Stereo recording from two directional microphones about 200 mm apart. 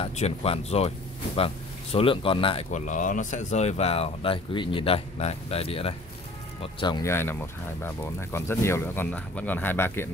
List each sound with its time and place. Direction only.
0.0 s speech: 30° left (ahead or behind)
2.7 s speech: 40° left (ahead or behind); by 10.0 s 10° left (ahead or behind)